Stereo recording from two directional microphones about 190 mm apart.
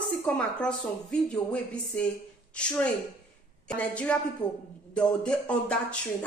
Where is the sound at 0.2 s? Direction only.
5° left (ahead or behind).